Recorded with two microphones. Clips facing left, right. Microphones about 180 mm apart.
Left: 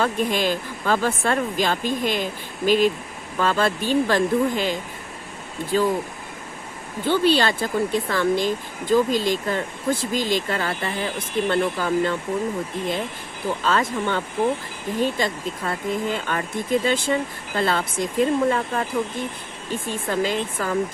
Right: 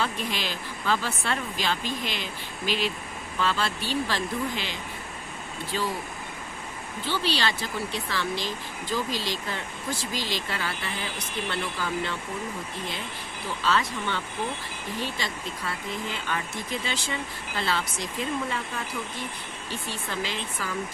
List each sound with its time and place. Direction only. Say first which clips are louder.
0.0 s speech: left 8 dB; 50° left (ahead or behind)
7.0 s speech: left 9 dB; 50° left (ahead or behind)
13.7 s speech: left 4 dB; 50° left (ahead or behind)